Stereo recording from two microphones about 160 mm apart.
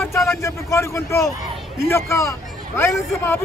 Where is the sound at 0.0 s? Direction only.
20° left (ahead or behind).